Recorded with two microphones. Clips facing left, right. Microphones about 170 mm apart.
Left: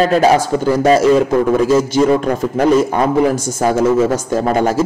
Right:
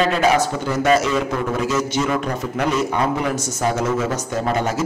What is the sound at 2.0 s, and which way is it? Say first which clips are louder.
Speech: left 8 dB; 35° left (ahead or behind).